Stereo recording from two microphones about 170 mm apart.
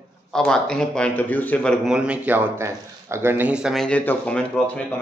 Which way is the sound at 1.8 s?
5° right (ahead or behind).